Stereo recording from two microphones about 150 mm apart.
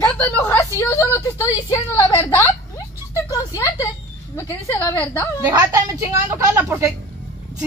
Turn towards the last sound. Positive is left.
turn(degrees=-15)  # may be behind; listen again after turning